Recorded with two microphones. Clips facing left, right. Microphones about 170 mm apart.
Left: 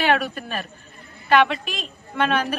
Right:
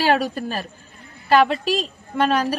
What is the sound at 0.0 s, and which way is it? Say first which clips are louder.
A woman's voice: right 2 dB; 35° right (ahead or behind).